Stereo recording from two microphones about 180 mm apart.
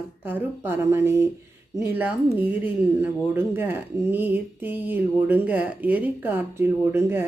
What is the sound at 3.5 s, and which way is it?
Speech, 10° right (ahead or behind).